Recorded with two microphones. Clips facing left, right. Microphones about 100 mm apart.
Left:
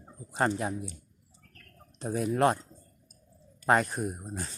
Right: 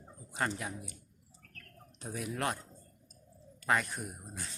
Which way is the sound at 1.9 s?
35° left (ahead or behind).